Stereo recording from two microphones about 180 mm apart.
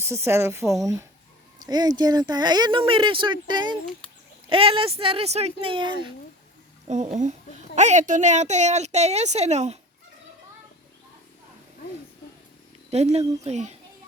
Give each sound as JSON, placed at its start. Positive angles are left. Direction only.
{"t": 0.0, "sound": "speech", "side_deg": -15}
{"t": 6.8, "sound": "speech", "side_deg": -40}
{"t": 12.9, "sound": "speech", "side_deg": -35}